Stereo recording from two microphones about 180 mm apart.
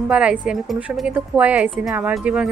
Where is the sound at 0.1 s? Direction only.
5° right (ahead or behind).